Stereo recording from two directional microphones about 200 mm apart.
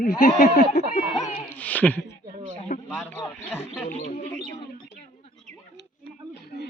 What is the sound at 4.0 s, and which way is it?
Speech, 40° left (ahead or behind).